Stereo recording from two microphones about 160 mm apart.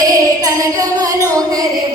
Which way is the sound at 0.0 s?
20° right (ahead or behind).